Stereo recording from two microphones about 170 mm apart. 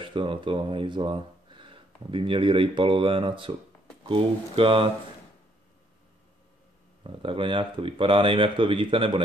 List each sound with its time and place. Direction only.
0.0 s speech: 30° right (ahead or behind)
7.0 s speech: 30° right (ahead or behind)